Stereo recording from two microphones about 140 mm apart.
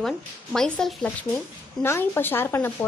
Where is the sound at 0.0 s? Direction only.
5° left (ahead or behind).